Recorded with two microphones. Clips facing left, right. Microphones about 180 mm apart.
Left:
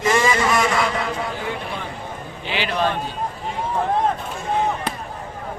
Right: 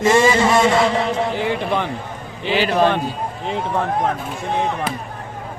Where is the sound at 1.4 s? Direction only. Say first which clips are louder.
Right 8 dB; 80° right.